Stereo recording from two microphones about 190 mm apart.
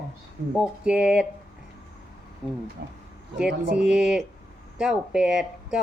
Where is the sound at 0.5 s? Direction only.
5° right (ahead or behind).